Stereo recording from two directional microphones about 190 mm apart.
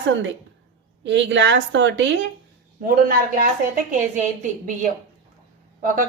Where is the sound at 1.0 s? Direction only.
70° right (ahead or behind).